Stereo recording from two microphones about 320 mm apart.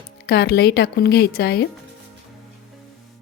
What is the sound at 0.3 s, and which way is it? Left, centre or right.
A woman's voice, left.